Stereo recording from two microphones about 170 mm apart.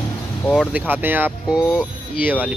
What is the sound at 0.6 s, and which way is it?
Speech, 10° right (ahead or behind).